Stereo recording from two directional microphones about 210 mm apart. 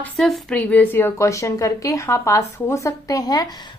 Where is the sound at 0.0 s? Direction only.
Centre (ahead or behind).